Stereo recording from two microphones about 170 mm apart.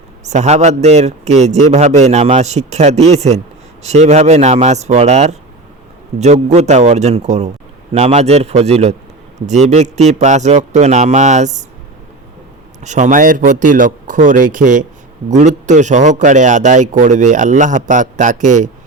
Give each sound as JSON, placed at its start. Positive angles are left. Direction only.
{"t": 0.3, "sound": "a man's voice", "side_deg": -40}
{"t": 12.8, "sound": "a man's voice", "side_deg": -45}